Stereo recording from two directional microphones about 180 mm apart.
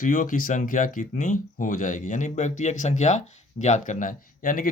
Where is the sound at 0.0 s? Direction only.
45° left (ahead or behind).